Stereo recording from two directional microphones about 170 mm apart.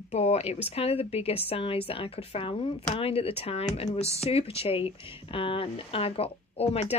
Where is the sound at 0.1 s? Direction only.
40° left (ahead or behind).